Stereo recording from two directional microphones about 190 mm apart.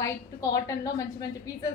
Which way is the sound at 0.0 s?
20° left (ahead or behind).